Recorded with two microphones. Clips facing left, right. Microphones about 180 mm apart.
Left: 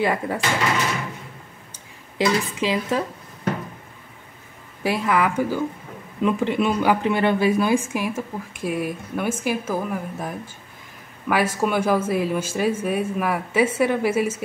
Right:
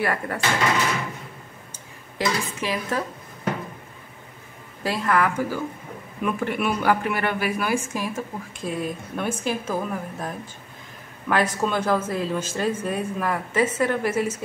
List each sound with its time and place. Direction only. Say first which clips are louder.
0.0 s speech: left 3 dB; 15° left (ahead or behind)
2.1 s speech: left 4 dB; 15° left (ahead or behind)
4.8 s speech: left 2 dB; 15° left (ahead or behind)
7.8 s speech: left 3 dB; 10° left (ahead or behind)